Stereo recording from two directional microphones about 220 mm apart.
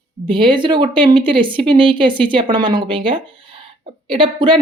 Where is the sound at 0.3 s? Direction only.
20° right (ahead or behind).